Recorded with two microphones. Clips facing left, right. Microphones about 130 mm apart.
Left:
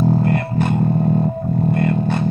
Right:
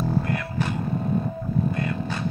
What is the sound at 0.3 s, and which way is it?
Music, 55° left (ahead or behind).